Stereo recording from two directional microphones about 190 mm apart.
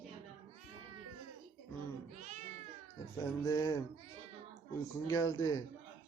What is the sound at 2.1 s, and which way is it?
Cat, 40° right (ahead or behind).